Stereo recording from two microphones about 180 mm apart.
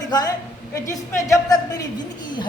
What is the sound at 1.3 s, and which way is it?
Speech, 20° left (ahead or behind).